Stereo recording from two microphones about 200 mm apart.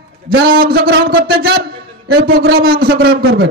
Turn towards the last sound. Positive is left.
turn(degrees=-55)  # may be behind; listen again after turning